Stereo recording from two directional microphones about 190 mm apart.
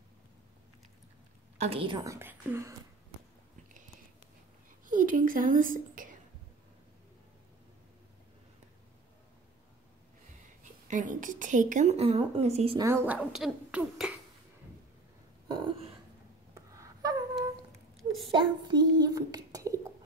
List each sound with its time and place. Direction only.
1.6 s speech: 30° right (ahead or behind); by 2.7 s 10° right (ahead or behind)
4.8 s a woman's voice: 45° right (ahead or behind)
10.6 s a woman's voice: 40° right (ahead or behind)
12.7 s speech: 15° right (ahead or behind)
15.4 s a sound: 20° right (ahead or behind)
17.9 s a sound: centre (ahead or behind)
18.3 s a child's voice: 25° right (ahead or behind)